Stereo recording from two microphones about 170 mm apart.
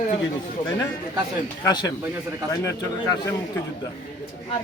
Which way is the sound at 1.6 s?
20° left (ahead or behind).